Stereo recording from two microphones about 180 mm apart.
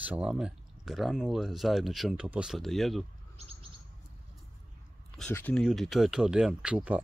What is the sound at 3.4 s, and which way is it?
Chirp, 35° right (ahead or behind).